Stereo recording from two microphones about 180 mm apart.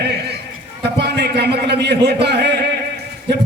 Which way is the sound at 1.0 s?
70° right (ahead or behind).